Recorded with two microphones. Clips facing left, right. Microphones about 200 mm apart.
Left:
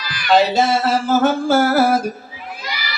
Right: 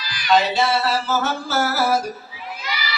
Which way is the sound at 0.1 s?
50° left (ahead or behind).